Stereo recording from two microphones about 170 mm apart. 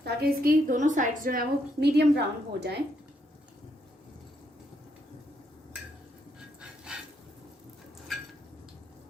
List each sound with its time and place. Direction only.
0.0 s a woman's voice: 65° right (ahead or behind)
6.6 s dog: 5° right (ahead or behind)